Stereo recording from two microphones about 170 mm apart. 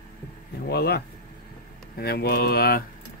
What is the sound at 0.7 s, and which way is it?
Mantra, 70° left (ahead or behind).